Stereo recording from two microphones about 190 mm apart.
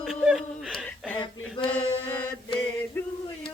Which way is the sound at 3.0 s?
10° left (ahead or behind).